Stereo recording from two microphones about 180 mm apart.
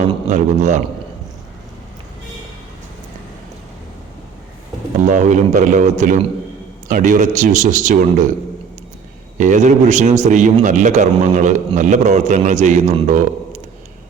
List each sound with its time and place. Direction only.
0.3 s a man's voice: 40° right (ahead or behind)
5.0 s a man's voice: 45° right (ahead or behind)
9.4 s a man's voice: 45° right (ahead or behind)